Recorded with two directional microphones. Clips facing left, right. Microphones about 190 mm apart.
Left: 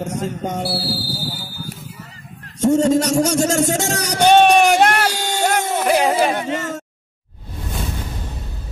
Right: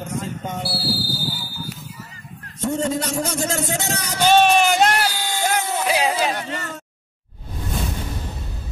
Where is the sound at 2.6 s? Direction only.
45° left (ahead or behind).